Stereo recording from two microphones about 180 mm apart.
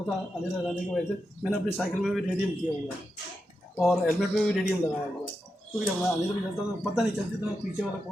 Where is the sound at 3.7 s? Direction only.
Centre (ahead or behind).